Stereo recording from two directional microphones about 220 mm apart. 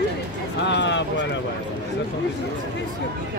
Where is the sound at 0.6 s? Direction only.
55° left (ahead or behind).